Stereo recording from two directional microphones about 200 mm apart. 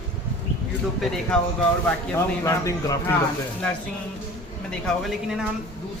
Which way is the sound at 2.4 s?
15° left (ahead or behind).